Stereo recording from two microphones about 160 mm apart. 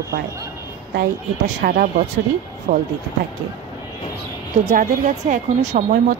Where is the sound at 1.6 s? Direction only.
65° right (ahead or behind).